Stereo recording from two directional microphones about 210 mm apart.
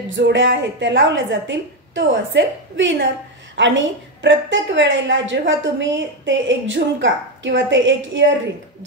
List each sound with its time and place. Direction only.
0.1 s a woman's voice: 60° right (ahead or behind)